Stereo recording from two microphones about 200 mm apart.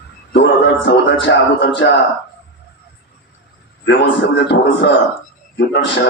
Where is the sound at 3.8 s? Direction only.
60° left (ahead or behind).